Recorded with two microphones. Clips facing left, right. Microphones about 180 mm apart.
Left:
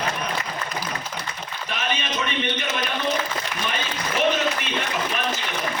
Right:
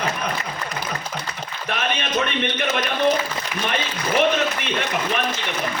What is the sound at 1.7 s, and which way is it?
Speech, 55° right (ahead or behind).